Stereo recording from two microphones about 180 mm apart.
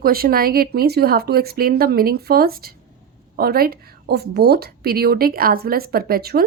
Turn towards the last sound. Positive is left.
turn(degrees=-60)  # may be behind; listen again after turning